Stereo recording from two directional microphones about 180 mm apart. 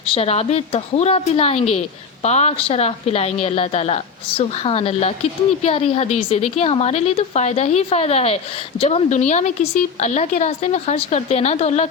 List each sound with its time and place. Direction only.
0.0 s a woman's voice: 30° left (ahead or behind)